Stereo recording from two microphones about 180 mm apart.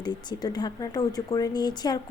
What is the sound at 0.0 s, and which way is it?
A woman's voice, 25° left (ahead or behind).